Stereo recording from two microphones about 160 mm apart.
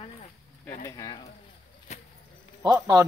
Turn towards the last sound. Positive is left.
turn(degrees=-20)  # may be behind; listen again after turning